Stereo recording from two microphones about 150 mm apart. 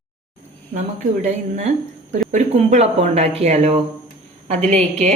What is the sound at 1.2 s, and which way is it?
A woman's voice, 55° right (ahead or behind).